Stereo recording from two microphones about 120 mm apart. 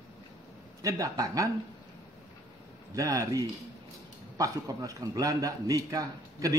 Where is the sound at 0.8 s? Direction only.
30° right (ahead or behind).